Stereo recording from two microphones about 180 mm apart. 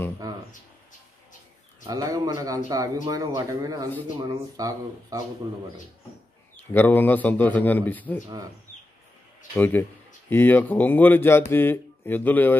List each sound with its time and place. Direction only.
0.2 s a sound: 20° right (ahead or behind)
1.9 s a man's voice: 20° right (ahead or behind)
6.7 s a man's voice: 10° left (ahead or behind)
9.6 s a man's voice: 10° left (ahead or behind)